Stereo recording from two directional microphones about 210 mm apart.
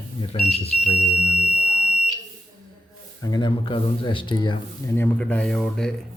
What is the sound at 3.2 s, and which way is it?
Speech, 20° left (ahead or behind).